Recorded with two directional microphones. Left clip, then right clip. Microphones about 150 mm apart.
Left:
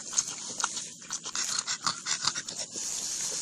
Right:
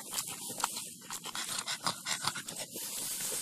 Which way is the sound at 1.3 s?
40° right (ahead or behind).